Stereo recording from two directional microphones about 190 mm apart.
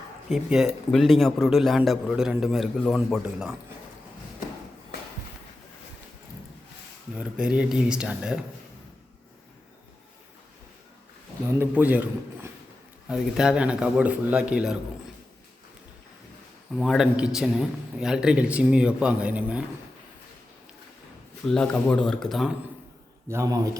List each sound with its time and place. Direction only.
0.3 s a man's voice: centre (ahead or behind)
7.2 s a man's voice: 5° right (ahead or behind)
11.6 s a man's voice: 10° right (ahead or behind)
16.7 s a man's voice: centre (ahead or behind)
21.4 s a man's voice: 5° left (ahead or behind)
23.3 s a man's voice: 15° right (ahead or behind)